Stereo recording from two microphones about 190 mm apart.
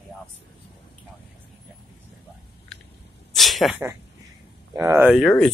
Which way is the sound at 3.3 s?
Centre (ahead or behind).